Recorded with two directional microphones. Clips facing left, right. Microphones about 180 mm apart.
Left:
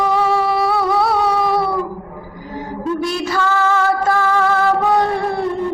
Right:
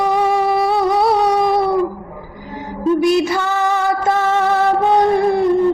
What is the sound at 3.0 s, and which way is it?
Music, 15° right (ahead or behind).